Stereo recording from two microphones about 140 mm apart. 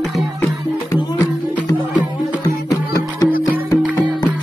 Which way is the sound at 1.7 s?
25° left (ahead or behind).